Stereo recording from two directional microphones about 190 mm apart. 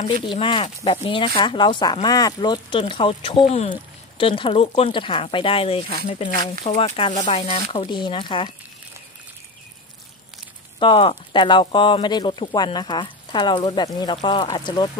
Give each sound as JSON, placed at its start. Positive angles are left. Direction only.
{"t": 0.0, "sound": "speech", "side_deg": 25}
{"t": 10.8, "sound": "speech", "side_deg": 30}